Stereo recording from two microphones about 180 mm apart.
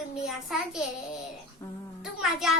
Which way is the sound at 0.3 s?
Centre (ahead or behind).